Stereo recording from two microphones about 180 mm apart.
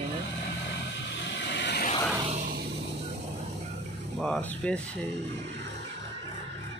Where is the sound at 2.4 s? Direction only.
50° right (ahead or behind).